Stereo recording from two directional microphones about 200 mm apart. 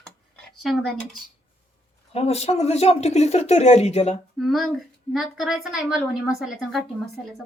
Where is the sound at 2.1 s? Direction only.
30° left (ahead or behind).